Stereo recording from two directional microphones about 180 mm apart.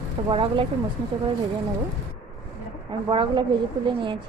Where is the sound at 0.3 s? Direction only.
30° right (ahead or behind).